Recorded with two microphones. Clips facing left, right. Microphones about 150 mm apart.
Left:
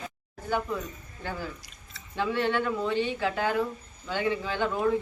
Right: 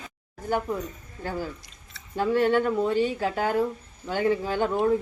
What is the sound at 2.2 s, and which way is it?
Speech, 45° right (ahead or behind).